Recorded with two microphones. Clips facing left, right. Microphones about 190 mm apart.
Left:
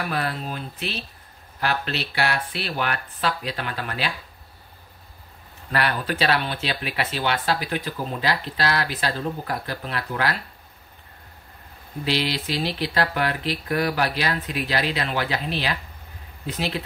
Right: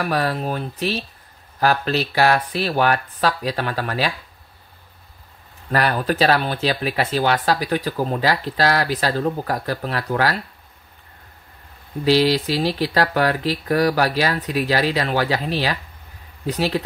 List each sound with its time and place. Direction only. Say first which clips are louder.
0.3 s speech: right 7 dB; 65° right (ahead or behind)
1.6 s speech: right 7 dB; 40° right (ahead or behind)
5.7 s speech: right 5 dB; 40° right (ahead or behind)
12.0 s speech: right 9 dB; 40° right (ahead or behind)